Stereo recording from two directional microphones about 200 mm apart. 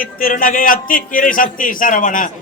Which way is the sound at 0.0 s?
45° left (ahead or behind).